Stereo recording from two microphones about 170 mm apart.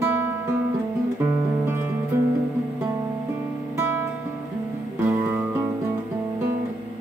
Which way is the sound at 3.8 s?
10° right (ahead or behind).